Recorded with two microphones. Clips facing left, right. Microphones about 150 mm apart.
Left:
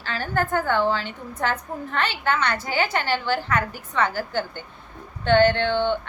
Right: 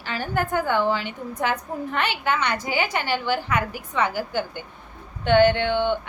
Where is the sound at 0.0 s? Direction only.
15° right (ahead or behind).